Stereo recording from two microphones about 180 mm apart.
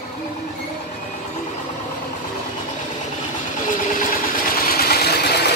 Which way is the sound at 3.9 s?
55° left (ahead or behind).